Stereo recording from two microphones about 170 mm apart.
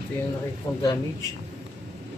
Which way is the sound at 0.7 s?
25° left (ahead or behind).